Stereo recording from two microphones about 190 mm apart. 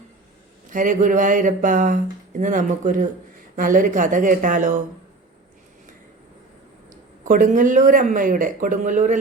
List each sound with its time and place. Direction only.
0.7 s speech: 45° right (ahead or behind)
6.9 s speech: 45° right (ahead or behind)